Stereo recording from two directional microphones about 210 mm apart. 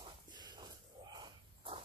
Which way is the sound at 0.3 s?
20° right (ahead or behind).